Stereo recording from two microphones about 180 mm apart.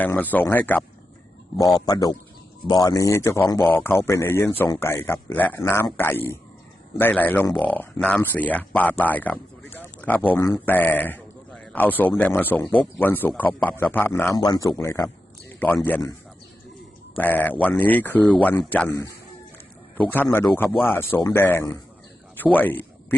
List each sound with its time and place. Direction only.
0.0 s a man's voice: 10° left (ahead or behind)
14.3 s a man's voice: 20° left (ahead or behind)
17.2 s a man's voice: 10° left (ahead or behind)